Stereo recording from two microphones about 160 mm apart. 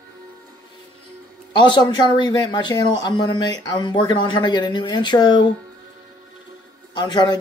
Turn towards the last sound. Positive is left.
turn(degrees=25)  # may be behind; listen again after turning